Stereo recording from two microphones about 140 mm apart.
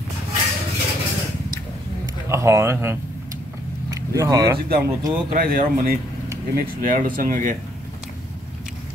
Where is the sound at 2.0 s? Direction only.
20° right (ahead or behind).